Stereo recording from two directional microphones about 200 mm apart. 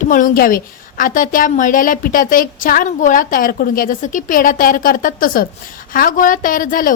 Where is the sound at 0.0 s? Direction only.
40° left (ahead or behind).